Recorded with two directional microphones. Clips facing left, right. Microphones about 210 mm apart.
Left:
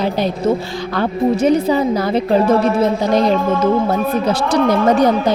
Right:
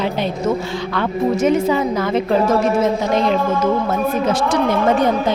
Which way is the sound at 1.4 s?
35° left (ahead or behind).